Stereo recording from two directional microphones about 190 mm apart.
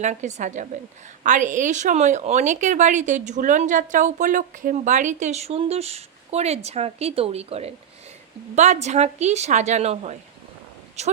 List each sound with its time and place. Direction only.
0.0 s a woman's voice: 40° right (ahead or behind)